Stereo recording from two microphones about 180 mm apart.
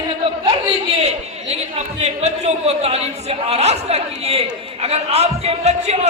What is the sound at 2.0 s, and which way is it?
A man's voice, 40° right (ahead or behind).